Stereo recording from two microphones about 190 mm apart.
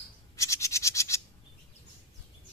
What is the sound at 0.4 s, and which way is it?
Scratch, 15° left (ahead or behind).